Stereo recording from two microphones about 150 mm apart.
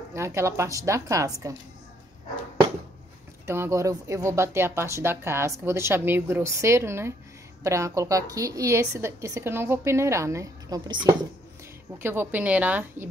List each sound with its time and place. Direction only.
0.1 s a woman's voice: 20° right (ahead or behind)
3.4 s a woman's voice: 15° right (ahead or behind)
12.0 s speech: 15° right (ahead or behind)